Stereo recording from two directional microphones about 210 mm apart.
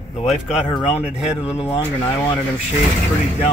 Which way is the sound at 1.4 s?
30° left (ahead or behind).